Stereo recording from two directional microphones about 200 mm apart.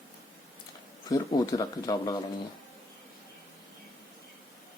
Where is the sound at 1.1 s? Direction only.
20° left (ahead or behind).